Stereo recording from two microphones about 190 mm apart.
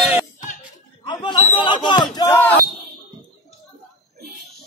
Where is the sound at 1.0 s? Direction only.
25° left (ahead or behind).